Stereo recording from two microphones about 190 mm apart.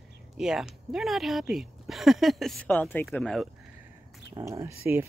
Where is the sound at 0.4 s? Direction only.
5° right (ahead or behind).